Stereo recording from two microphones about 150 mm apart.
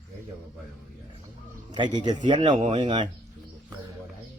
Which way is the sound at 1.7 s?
30° right (ahead or behind).